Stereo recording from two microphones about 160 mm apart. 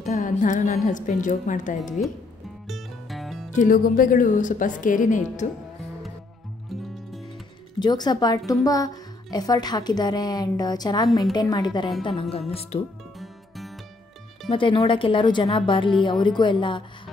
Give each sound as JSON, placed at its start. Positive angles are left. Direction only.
{"t": 0.0, "sound": "a woman's voice", "side_deg": 50}
{"t": 2.7, "sound": "music", "side_deg": 0}
{"t": 3.5, "sound": "speech", "side_deg": 60}
{"t": 6.7, "sound": "music", "side_deg": 0}
{"t": 7.8, "sound": "a woman's voice", "side_deg": 25}
{"t": 14.5, "sound": "a woman's voice", "side_deg": 30}